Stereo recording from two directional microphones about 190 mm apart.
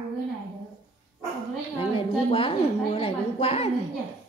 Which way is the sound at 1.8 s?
30° left (ahead or behind).